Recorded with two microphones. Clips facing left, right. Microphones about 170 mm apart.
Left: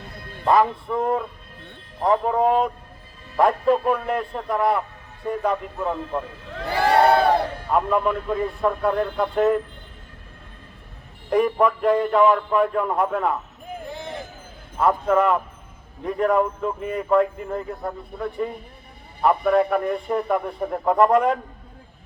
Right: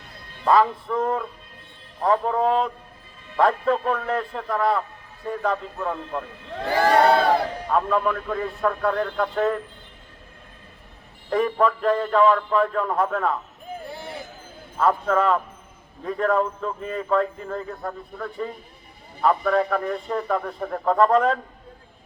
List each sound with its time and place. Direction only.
0.4 s a man's voice: 15° left (ahead or behind)
7.7 s a man's voice: 15° left (ahead or behind)
11.3 s a man's voice: 15° left (ahead or behind)
13.9 s a sound: 10° right (ahead or behind)
14.8 s a man's voice: 15° left (ahead or behind)